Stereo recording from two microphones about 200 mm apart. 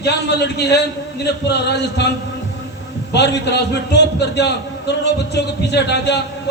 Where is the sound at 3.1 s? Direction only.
60° left (ahead or behind).